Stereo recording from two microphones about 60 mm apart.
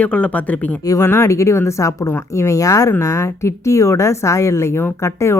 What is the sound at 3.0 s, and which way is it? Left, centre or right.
Speech, left.